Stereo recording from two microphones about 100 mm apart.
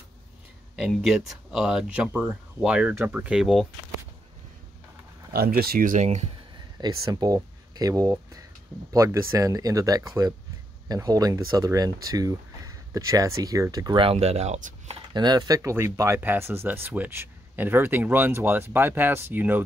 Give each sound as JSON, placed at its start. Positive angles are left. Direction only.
{"t": 0.7, "sound": "speech", "side_deg": -5}
{"t": 6.8, "sound": "speech", "side_deg": -40}
{"t": 13.9, "sound": "speech", "side_deg": -75}
{"t": 15.1, "sound": "speech", "side_deg": -40}